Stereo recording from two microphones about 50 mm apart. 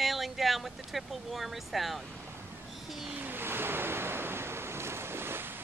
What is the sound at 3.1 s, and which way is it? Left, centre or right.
Waves, right.